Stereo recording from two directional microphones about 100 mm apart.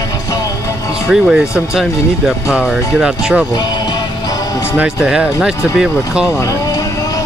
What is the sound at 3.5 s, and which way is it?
Music, 45° left (ahead or behind).